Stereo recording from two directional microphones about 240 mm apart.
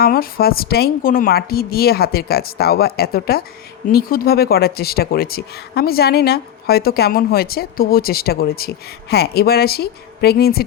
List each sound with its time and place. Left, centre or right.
0.0 s speech: left